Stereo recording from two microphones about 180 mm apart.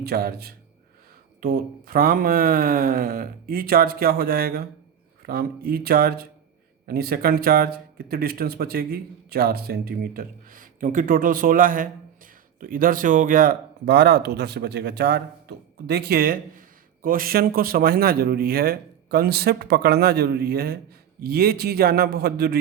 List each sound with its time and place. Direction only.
0.0 s speech: 60° right (ahead or behind)